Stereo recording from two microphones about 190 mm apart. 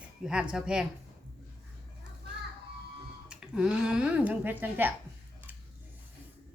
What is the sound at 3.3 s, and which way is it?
Speech, 5° right (ahead or behind).